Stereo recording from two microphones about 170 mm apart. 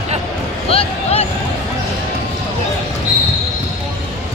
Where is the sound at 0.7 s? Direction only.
35° left (ahead or behind).